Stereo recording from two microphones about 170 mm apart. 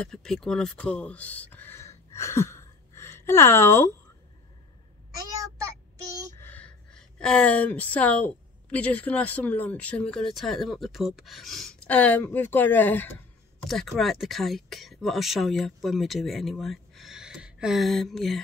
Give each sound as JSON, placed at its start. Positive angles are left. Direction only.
{"t": 0.0, "sound": "speech", "side_deg": 5}
{"t": 5.3, "sound": "child singing", "side_deg": -20}
{"t": 6.4, "sound": "a woman's voice", "side_deg": 10}